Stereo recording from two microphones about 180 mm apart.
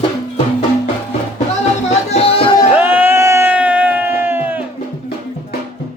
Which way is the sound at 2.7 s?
10° right (ahead or behind).